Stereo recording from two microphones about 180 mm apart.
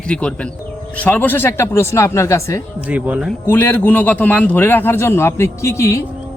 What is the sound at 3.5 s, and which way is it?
Speech, 10° left (ahead or behind).